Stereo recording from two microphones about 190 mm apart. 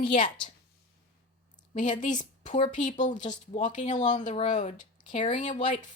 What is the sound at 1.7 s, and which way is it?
Speech, 40° left (ahead or behind).